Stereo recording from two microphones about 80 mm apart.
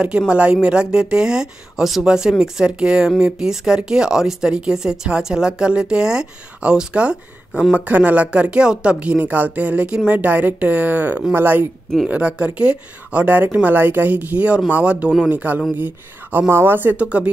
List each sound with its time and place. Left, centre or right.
0.3 s speech: centre
12.1 s speech: centre